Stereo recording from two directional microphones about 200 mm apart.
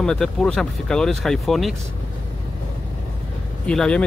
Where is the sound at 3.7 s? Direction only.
5° left (ahead or behind).